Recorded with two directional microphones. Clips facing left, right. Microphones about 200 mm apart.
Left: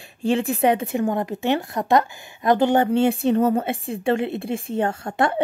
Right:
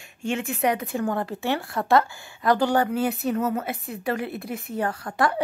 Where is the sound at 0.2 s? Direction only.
35° left (ahead or behind).